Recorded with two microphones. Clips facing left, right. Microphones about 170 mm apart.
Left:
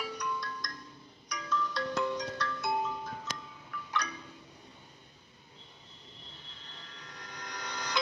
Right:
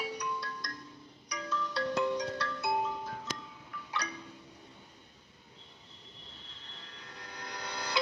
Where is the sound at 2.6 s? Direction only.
10° right (ahead or behind).